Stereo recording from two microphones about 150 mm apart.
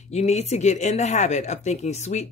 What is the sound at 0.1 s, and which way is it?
Speech, 45° left (ahead or behind).